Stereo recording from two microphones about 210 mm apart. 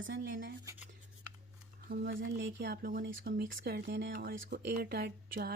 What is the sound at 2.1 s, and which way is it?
Speech, 60° right (ahead or behind).